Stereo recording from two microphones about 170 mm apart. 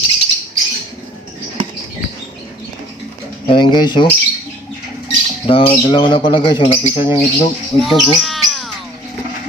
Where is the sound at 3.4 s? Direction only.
25° left (ahead or behind).